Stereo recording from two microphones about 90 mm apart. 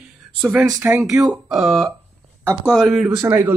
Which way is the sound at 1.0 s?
40° right (ahead or behind).